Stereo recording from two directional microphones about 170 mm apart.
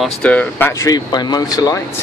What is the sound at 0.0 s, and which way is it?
Speech, 5° left (ahead or behind).